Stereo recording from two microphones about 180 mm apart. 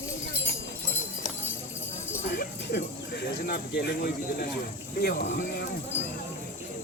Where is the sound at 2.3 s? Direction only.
60° left (ahead or behind).